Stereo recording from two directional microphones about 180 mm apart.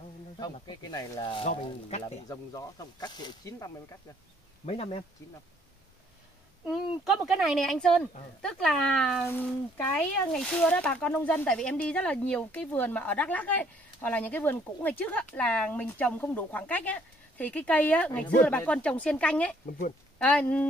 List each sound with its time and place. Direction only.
0.4 s speech: 25° left (ahead or behind)
2.2 s speech: 20° left (ahead or behind)
4.6 s speech: 35° left (ahead or behind)
6.6 s speech: centre (ahead or behind)